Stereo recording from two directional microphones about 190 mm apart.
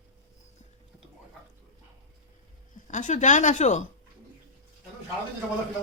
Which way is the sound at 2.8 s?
40° left (ahead or behind).